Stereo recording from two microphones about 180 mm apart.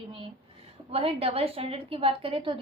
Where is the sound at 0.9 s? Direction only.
35° right (ahead or behind).